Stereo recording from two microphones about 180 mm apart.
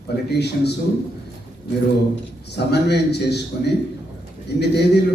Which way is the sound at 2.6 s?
70° left (ahead or behind).